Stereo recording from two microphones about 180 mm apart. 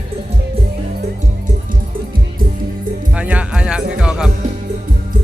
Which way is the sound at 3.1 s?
5° right (ahead or behind).